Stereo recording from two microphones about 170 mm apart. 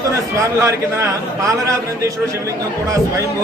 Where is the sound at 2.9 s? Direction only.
20° right (ahead or behind).